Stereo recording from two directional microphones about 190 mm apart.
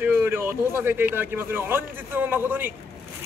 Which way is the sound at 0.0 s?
10° right (ahead or behind).